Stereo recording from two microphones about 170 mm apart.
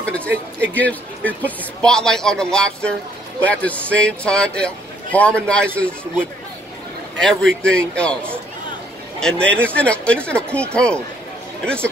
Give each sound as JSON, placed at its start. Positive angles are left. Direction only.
{"t": 0.0, "sound": "a sound", "side_deg": 5}
{"t": 0.7, "sound": "a man's voice", "side_deg": 10}
{"t": 7.2, "sound": "a man's voice", "side_deg": 5}